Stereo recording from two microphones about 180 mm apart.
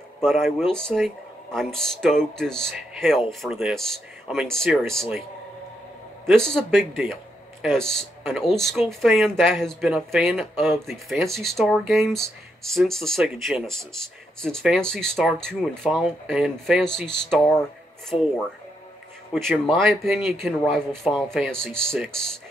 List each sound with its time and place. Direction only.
0.2 s speech: centre (ahead or behind)
6.2 s speech: centre (ahead or behind)
18.1 s speech: 30° left (ahead or behind)
19.3 s speech: centre (ahead or behind)